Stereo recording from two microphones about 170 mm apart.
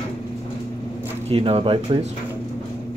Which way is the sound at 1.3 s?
35° right (ahead or behind).